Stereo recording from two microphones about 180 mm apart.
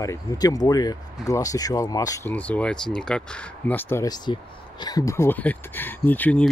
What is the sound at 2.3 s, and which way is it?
Speech, 5° left (ahead or behind).